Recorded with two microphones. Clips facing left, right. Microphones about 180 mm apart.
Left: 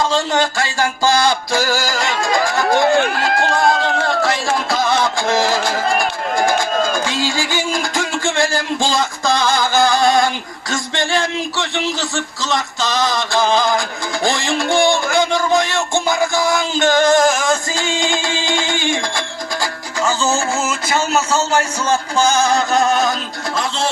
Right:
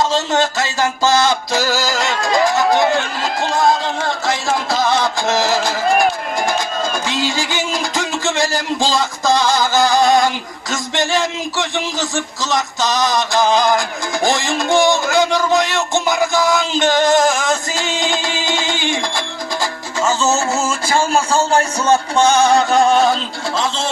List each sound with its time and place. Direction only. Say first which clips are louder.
0.1 s music: even; 20° right (ahead or behind)
3.0 s run: left 4 dB; 55° left (ahead or behind)
7.1 s speech: even; 20° right (ahead or behind)
10.7 s music: right 1 dB; 20° right (ahead or behind)
20.0 s music: right 1 dB; 25° right (ahead or behind)
21.1 s a man's voice: right 1 dB; 30° right (ahead or behind)